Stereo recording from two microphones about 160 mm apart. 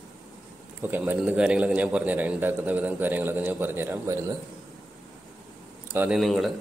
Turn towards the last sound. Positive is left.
turn(degrees=0)  # may be behind; listen again after turning